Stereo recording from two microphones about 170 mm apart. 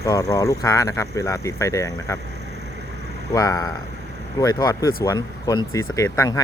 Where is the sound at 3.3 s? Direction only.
20° left (ahead or behind).